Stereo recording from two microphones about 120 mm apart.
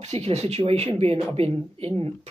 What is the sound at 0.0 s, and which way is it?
Speech, 65° right (ahead or behind).